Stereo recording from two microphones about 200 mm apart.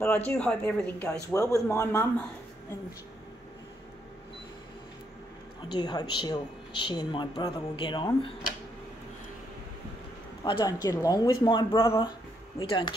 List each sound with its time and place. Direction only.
0.0 s a man's voice: 5° left (ahead or behind)
5.7 s speech: 20° left (ahead or behind)
10.4 s speech: 20° left (ahead or behind)